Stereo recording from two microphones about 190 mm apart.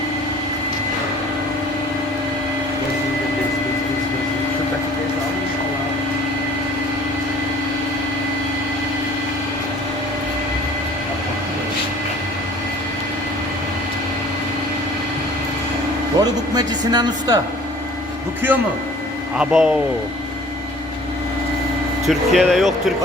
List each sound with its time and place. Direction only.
16.2 s a sound: 20° right (ahead or behind)
19.4 s speech: 5° right (ahead or behind)
22.0 s speech: centre (ahead or behind)